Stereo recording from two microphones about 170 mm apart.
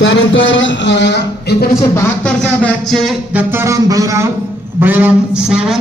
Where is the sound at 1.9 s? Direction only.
5° left (ahead or behind).